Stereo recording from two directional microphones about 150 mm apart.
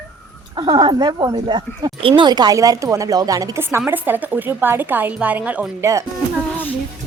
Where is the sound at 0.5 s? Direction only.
30° right (ahead or behind); by 5.9 s 10° right (ahead or behind).